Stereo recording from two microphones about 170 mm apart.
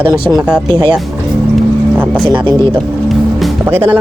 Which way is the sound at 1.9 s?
10° right (ahead or behind).